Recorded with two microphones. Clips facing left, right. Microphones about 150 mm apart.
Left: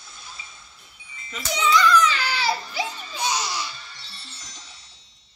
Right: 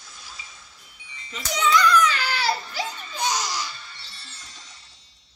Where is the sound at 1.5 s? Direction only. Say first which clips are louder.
Even; 5° left (ahead or behind).